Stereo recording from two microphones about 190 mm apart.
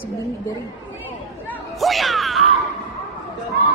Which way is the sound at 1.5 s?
Centre (ahead or behind).